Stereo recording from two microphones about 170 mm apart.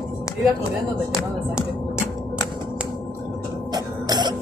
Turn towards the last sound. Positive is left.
turn(degrees=-25)  # may be behind; listen again after turning